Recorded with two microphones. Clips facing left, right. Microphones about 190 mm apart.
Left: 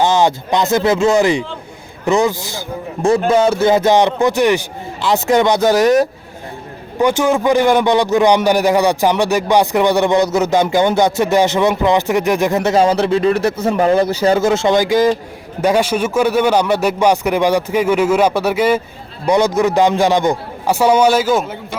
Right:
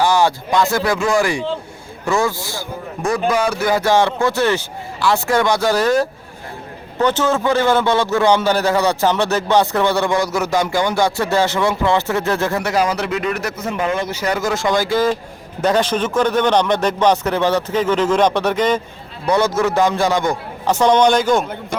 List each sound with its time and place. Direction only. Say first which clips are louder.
0.0 s a man's voice: left 2 dB; 20° left (ahead or behind)
20.7 s a man's voice: left 1 dB; 10° left (ahead or behind)